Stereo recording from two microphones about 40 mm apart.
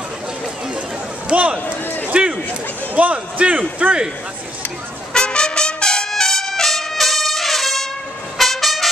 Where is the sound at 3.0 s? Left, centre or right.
Right.